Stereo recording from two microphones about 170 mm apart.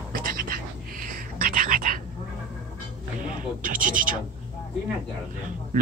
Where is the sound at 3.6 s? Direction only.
55° right (ahead or behind).